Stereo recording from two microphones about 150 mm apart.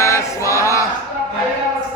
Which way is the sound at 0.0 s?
20° left (ahead or behind).